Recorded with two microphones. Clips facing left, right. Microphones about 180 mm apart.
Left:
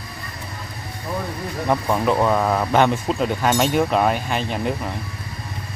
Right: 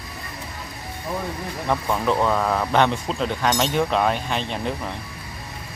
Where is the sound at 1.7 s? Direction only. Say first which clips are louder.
Left 3 dB; 10° left (ahead or behind).